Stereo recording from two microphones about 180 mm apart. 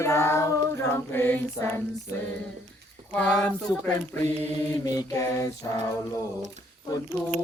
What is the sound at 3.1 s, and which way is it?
Speech, 5° left (ahead or behind).